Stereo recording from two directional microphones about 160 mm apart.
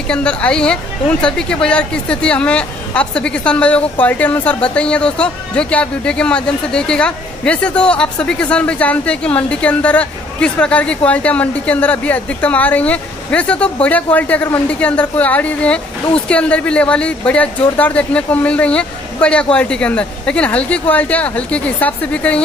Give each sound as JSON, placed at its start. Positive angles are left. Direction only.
{"t": 0.1, "sound": "speech", "side_deg": 5}